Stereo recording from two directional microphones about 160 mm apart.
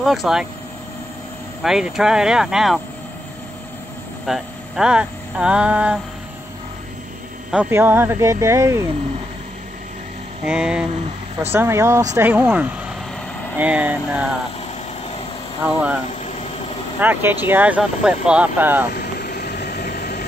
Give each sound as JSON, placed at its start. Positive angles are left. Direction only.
{"t": 0.0, "sound": "speech", "side_deg": 0}
{"t": 1.6, "sound": "speech", "side_deg": -5}
{"t": 4.3, "sound": "speech", "side_deg": -5}
{"t": 7.5, "sound": "speech", "side_deg": -15}
{"t": 10.4, "sound": "speech", "side_deg": -5}
{"t": 11.5, "sound": "speech", "side_deg": -15}
{"t": 15.6, "sound": "speech", "side_deg": -10}
{"t": 16.1, "sound": "vehicle", "side_deg": 45}
{"t": 17.0, "sound": "speech", "side_deg": -15}
{"t": 18.9, "sound": "vehicle", "side_deg": 70}